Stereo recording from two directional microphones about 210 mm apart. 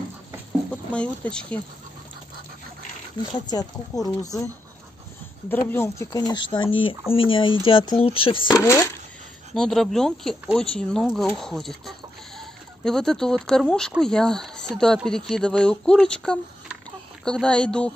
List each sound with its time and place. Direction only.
0.9 s speech: 5° left (ahead or behind)
3.3 s speech: 20° left (ahead or behind)
5.5 s speech: 10° left (ahead or behind)
8.5 s speech: 15° left (ahead or behind)
9.5 s speech: centre (ahead or behind)